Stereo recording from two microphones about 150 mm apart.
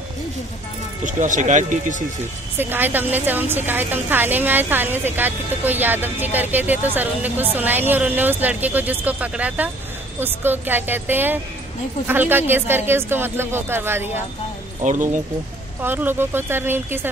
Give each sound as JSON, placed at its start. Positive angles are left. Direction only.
{"t": 1.0, "sound": "speech", "side_deg": -55}
{"t": 2.5, "sound": "a woman's voice", "side_deg": -15}
{"t": 14.8, "sound": "speech", "side_deg": -55}
{"t": 15.8, "sound": "a woman's voice", "side_deg": -15}